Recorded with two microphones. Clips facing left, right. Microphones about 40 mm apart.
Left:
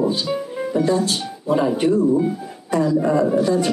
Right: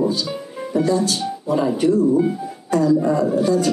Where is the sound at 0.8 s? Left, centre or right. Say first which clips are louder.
Right 2 dB; left.